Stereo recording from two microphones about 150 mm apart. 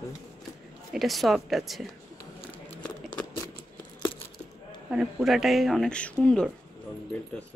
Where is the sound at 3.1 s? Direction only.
25° left (ahead or behind).